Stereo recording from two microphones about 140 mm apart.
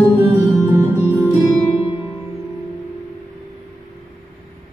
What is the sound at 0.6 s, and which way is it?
Music, 15° right (ahead or behind).